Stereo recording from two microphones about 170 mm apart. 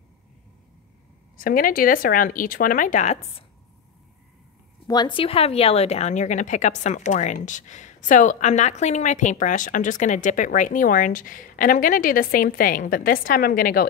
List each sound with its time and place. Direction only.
1.3 s speech: 55° left (ahead or behind)
4.8 s a woman's voice: 25° left (ahead or behind); by 13.8 s 60° left (ahead or behind)